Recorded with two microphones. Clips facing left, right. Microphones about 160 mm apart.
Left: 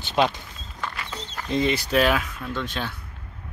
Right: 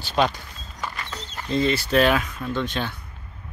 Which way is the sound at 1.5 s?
15° left (ahead or behind).